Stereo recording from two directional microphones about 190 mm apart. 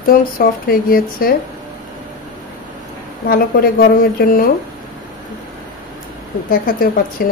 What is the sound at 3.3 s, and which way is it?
Speech, 50° left (ahead or behind).